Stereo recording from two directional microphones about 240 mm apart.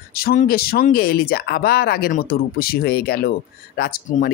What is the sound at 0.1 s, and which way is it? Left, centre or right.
Speech, left.